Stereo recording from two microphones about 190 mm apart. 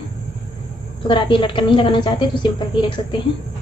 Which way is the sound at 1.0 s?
25° left (ahead or behind).